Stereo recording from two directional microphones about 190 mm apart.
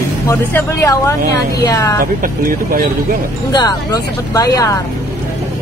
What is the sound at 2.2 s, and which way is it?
Speech, 50° right (ahead or behind).